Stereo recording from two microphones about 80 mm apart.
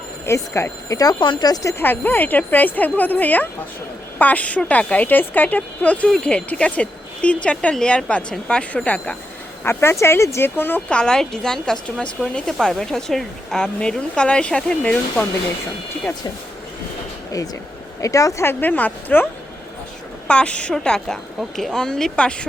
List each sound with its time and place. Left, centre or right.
0.3 s speech: left
1.2 s speech: left
1.8 s a woman's voice: left
9.6 s speech: left
10.8 s speech: centre
18.0 s speech: left
18.4 s a woman's voice: left
20.2 s speech: centre